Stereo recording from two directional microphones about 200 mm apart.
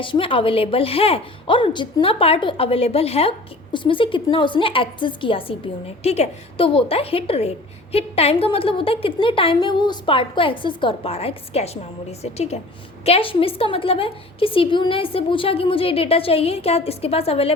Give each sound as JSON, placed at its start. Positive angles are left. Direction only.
{"t": 0.0, "sound": "a woman's voice", "side_deg": 25}